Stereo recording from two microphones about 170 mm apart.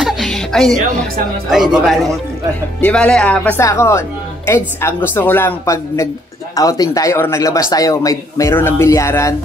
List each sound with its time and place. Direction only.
0.0 s music: centre (ahead or behind)
1.5 s a woman's voice: 5° right (ahead or behind); by 9.3 s 15° left (ahead or behind)